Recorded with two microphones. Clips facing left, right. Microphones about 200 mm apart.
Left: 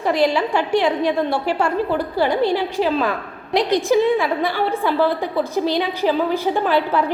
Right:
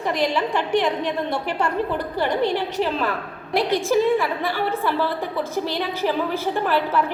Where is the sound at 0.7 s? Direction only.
10° left (ahead or behind).